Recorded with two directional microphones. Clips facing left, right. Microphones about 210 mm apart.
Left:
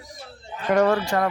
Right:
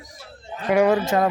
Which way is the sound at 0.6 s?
10° right (ahead or behind).